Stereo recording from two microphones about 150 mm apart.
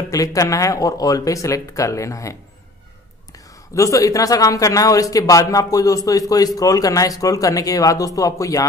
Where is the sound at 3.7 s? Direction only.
20° left (ahead or behind).